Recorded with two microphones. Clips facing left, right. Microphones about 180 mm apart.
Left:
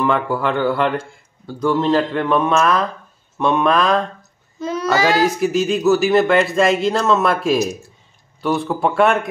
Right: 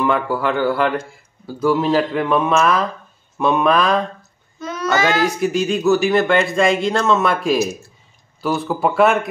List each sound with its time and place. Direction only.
0.0 s speech: centre (ahead or behind)
4.6 s child singing: 30° left (ahead or behind)
5.2 s speech: centre (ahead or behind)